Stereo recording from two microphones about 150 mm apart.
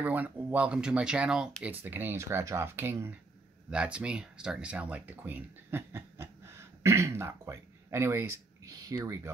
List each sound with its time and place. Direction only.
0.0 s speech: 10° right (ahead or behind)